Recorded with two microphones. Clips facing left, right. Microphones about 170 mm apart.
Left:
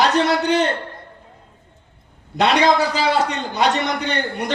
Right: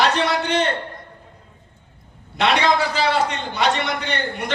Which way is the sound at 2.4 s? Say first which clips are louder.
Left 3 dB; 40° left (ahead or behind).